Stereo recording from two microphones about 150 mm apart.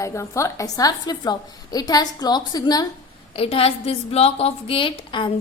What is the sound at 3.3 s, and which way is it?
A woman's voice, 40° left (ahead or behind).